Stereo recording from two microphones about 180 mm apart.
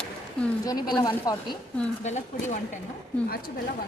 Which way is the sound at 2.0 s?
40° left (ahead or behind).